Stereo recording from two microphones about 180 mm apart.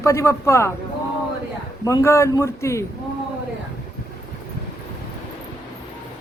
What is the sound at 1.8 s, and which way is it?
A man's voice, 15° left (ahead or behind).